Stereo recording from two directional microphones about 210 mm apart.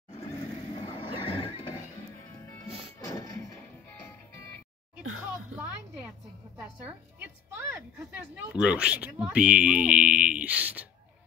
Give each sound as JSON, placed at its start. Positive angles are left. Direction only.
{"t": 0.8, "sound": "vehicle", "side_deg": 25}
{"t": 2.4, "sound": "music", "side_deg": 10}
{"t": 6.6, "sound": "a woman's voice", "side_deg": -5}